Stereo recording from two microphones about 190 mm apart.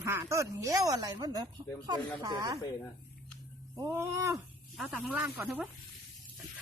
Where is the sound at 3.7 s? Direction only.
15° right (ahead or behind).